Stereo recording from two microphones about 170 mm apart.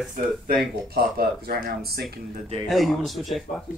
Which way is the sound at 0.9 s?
60° right (ahead or behind).